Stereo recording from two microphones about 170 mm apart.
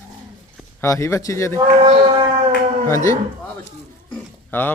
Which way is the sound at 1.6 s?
30° right (ahead or behind).